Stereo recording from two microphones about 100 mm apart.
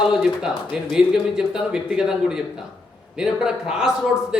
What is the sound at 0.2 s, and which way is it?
A man's voice, 5° right (ahead or behind).